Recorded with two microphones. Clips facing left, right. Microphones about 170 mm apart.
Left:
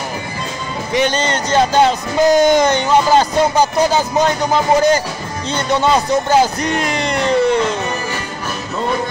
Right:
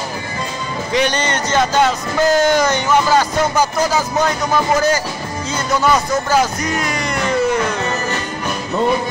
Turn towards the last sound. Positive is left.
turn(degrees=30)  # may be behind; listen again after turning